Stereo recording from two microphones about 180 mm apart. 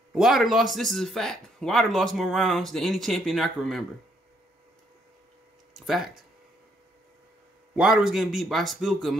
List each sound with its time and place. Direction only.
0.1 s speech: centre (ahead or behind)
5.9 s speech: centre (ahead or behind)
7.7 s speech: 5° right (ahead or behind)